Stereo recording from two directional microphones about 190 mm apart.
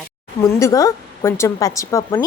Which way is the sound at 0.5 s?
15° left (ahead or behind).